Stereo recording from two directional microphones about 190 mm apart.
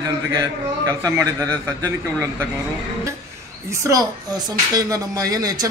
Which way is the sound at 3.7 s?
15° right (ahead or behind).